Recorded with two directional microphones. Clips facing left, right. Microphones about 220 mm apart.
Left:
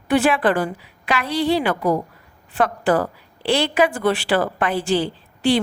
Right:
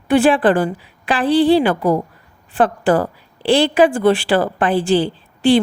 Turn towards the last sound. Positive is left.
turn(degrees=-30)  # may be behind; listen again after turning